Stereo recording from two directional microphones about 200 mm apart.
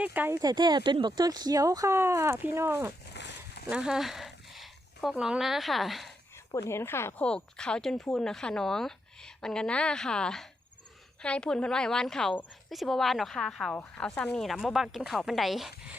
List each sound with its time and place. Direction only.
0.0 s speech: 10° right (ahead or behind)
3.1 s a sound: 55° left (ahead or behind)
3.7 s speech: 5° right (ahead or behind)
6.5 s a woman's voice: 15° left (ahead or behind); by 16.0 s centre (ahead or behind)